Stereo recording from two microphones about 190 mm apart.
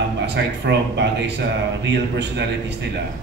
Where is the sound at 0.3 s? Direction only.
65° right (ahead or behind).